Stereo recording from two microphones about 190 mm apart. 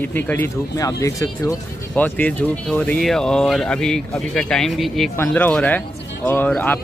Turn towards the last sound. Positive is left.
turn(degrees=10)  # may be behind; listen again after turning